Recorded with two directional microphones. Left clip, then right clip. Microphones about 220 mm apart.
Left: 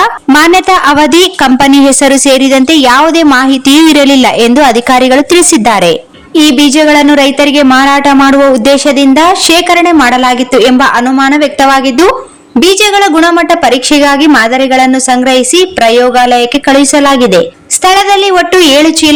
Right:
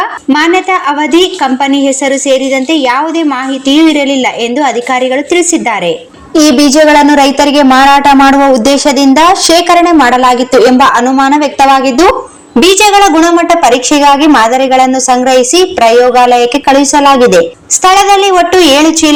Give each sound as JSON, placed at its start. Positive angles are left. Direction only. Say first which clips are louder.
{"t": 0.3, "sound": "a woman's voice", "louder": "left 4 dB", "side_deg": 40}
{"t": 6.6, "sound": "speech", "louder": "right 2 dB", "side_deg": 20}